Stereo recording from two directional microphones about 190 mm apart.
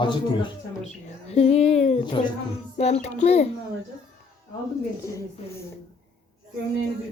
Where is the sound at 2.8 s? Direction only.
35° left (ahead or behind).